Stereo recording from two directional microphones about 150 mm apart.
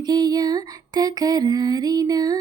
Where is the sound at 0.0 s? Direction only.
25° right (ahead or behind).